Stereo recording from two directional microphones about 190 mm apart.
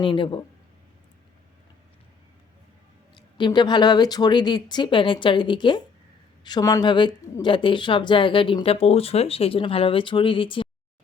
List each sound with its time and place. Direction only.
0.0 s a woman's voice: 25° left (ahead or behind)
3.2 s a woman's voice: 25° left (ahead or behind)